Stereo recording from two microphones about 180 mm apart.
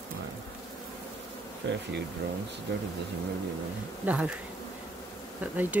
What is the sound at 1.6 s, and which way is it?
Speech, 75° right (ahead or behind).